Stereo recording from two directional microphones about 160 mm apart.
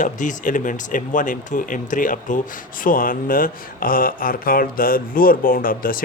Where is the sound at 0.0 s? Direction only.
50° left (ahead or behind).